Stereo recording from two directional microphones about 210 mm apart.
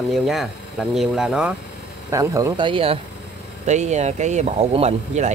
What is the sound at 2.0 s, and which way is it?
Speech, 15° right (ahead or behind).